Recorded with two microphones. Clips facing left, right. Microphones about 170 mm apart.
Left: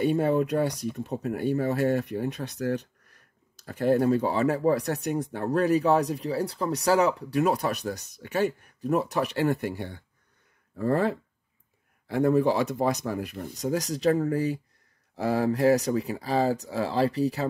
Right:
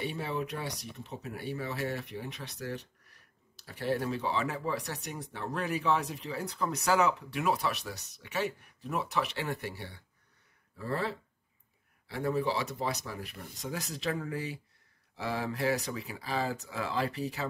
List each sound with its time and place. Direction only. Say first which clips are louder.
0.0 s speech: left 12 dB; 45° left (ahead or behind)